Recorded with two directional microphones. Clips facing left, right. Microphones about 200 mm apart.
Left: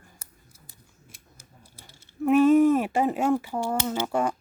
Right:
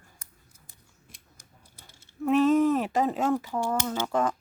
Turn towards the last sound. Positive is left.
turn(degrees=10)  # may be behind; listen again after turning